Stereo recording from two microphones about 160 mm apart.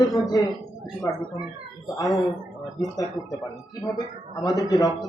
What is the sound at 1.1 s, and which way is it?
Speech, 15° left (ahead or behind).